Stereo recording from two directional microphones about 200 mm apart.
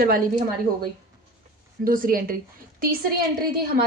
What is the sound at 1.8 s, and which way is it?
Speech, 45° right (ahead or behind).